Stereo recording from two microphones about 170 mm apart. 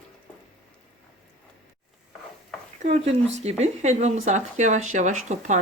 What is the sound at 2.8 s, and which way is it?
Speech, 40° right (ahead or behind).